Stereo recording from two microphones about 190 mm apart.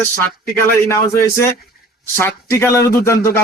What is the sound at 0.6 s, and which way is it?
Speech, 15° left (ahead or behind).